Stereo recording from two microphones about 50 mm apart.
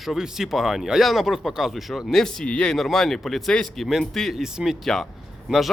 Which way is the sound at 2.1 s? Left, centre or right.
Centre.